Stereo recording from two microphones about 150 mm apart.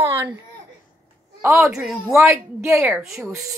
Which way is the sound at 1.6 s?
5° right (ahead or behind).